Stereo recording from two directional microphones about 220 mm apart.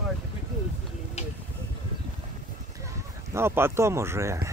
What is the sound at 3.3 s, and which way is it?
Speech, 10° right (ahead or behind).